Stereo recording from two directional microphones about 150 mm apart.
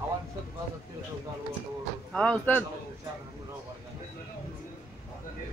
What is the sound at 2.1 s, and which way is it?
Speech, 10° left (ahead or behind).